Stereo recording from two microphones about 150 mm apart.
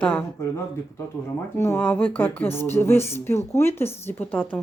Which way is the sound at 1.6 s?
15° left (ahead or behind).